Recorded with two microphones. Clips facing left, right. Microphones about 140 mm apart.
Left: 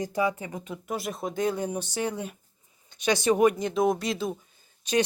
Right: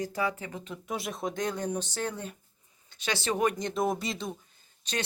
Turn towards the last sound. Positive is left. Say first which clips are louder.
# left 9 dB
turn(degrees=10)  # may be behind; listen again after turning